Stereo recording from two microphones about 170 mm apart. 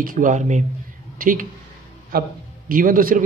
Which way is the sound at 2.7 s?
55° right (ahead or behind).